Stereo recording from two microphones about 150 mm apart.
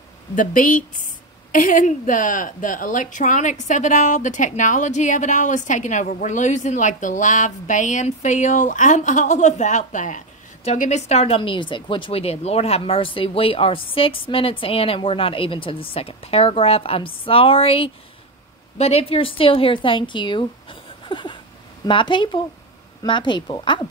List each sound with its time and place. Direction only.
0.4 s a woman's voice: 60° left (ahead or behind); by 20.4 s 30° left (ahead or behind)
21.0 s a sound: 35° left (ahead or behind)
21.8 s a woman's voice: 35° left (ahead or behind)